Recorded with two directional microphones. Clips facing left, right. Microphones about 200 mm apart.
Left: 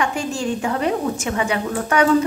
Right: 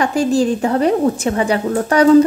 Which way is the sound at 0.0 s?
35° right (ahead or behind).